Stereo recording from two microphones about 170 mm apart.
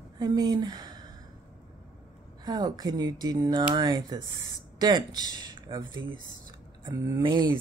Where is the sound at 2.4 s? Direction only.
25° right (ahead or behind).